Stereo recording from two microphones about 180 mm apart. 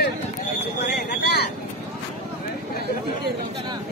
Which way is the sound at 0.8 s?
65° left (ahead or behind).